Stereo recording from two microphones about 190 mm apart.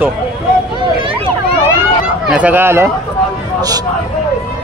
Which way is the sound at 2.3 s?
10° right (ahead or behind).